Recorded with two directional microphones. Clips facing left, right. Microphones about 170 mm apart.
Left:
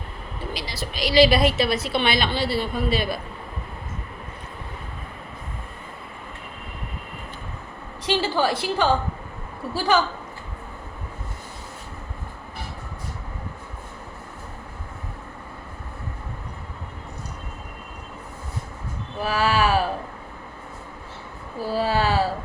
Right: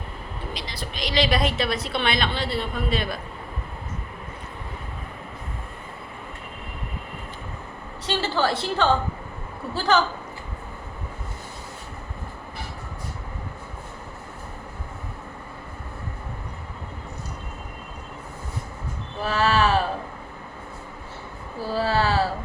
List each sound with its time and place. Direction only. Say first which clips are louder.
0.5 s a woman's voice: left 4 dB; 5° left (ahead or behind)
8.0 s a woman's voice: left 2 dB; 10° left (ahead or behind)
19.2 s a sound: even; 10° left (ahead or behind)
21.6 s speech: left 1 dB; 15° left (ahead or behind)